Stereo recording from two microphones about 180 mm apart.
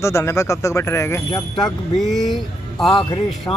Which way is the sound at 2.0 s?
Centre (ahead or behind).